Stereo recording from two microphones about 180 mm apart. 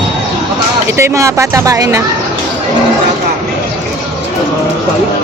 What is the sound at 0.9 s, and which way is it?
Speech, 15° right (ahead or behind).